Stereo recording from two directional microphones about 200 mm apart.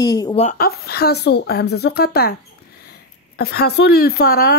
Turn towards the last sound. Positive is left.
turn(degrees=50)  # may be behind; listen again after turning